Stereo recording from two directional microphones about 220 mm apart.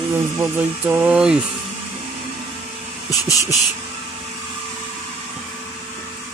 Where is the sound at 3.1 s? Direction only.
15° left (ahead or behind).